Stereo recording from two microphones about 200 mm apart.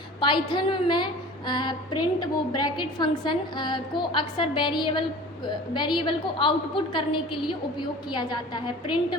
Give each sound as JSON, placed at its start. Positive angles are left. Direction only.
{"t": 0.2, "sound": "a woman's voice", "side_deg": 25}